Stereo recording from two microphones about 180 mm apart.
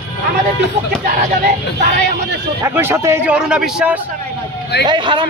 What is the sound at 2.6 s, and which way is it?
A man's voice, 15° right (ahead or behind).